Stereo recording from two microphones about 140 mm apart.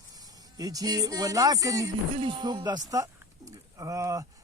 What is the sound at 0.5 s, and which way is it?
Speech, 25° right (ahead or behind).